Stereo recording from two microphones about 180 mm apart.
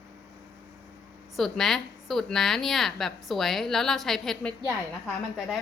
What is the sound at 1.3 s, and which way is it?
A woman's voice, centre (ahead or behind).